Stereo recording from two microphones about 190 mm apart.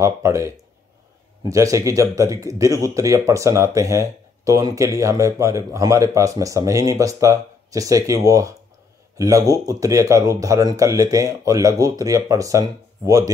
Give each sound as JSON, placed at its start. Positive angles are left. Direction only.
{"t": 0.0, "sound": "speech", "side_deg": -15}